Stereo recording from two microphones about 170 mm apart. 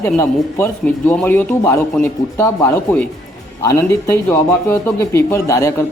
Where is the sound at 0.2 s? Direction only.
10° left (ahead or behind).